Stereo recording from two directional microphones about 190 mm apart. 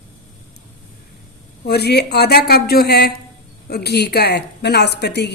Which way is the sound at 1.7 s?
60° left (ahead or behind).